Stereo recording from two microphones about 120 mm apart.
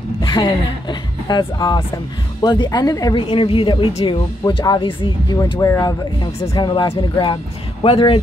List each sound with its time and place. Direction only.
0.2 s speech: 40° left (ahead or behind)
3.3 s speech: 50° left (ahead or behind)
5.4 s speech: 30° left (ahead or behind); by 8.2 s 50° left (ahead or behind)